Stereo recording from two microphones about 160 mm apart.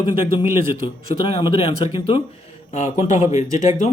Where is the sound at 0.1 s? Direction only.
30° left (ahead or behind).